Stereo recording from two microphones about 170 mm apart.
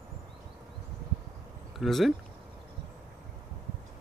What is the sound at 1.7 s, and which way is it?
Speech, centre (ahead or behind).